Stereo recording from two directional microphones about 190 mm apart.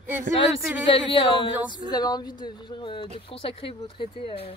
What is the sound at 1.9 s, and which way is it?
Speech, 20° left (ahead or behind).